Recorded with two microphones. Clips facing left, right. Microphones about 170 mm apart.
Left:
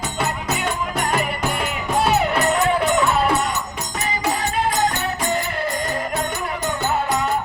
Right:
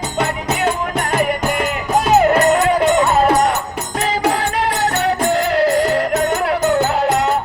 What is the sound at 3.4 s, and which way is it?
Music, 60° right (ahead or behind).